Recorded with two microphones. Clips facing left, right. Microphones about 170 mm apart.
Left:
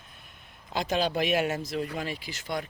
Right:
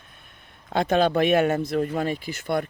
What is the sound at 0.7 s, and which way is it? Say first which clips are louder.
Speech: right 7 dB; 55° right (ahead or behind).